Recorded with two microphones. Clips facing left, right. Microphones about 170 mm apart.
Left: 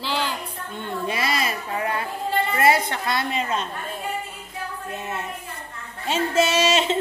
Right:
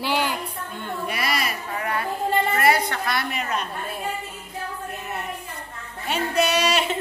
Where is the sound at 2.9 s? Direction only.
25° left (ahead or behind).